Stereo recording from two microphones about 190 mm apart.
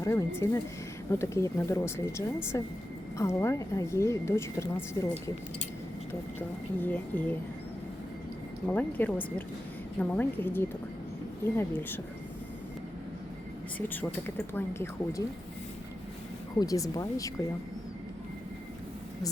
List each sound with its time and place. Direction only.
0.0 s speech: 15° left (ahead or behind)
6.7 s speech: 10° left (ahead or behind)
8.6 s speech: 10° left (ahead or behind)
13.7 s speech: 10° left (ahead or behind)
16.6 s speech: 20° left (ahead or behind)